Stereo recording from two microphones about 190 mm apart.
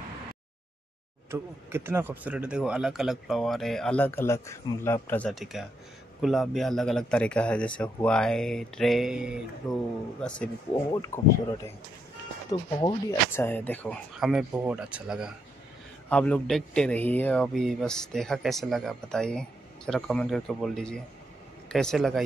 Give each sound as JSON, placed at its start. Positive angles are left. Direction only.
{"t": 1.3, "sound": "speech", "side_deg": -10}
{"t": 5.3, "sound": "speech", "side_deg": 0}
{"t": 10.7, "sound": "speech", "side_deg": 20}
{"t": 12.4, "sound": "speech", "side_deg": 20}
{"t": 16.1, "sound": "speech", "side_deg": 5}